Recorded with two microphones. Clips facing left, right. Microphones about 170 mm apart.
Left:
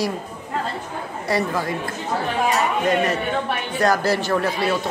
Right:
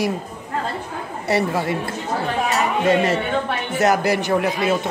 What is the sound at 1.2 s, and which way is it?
Speech, 25° right (ahead or behind).